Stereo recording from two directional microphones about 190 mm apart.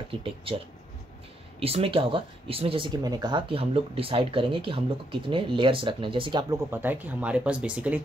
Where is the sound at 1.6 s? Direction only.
30° right (ahead or behind).